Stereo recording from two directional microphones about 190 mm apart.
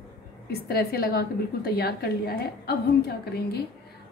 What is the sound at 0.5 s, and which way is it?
A woman's voice, 55° left (ahead or behind).